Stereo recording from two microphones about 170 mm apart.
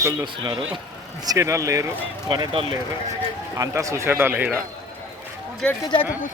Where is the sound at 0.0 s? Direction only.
20° right (ahead or behind).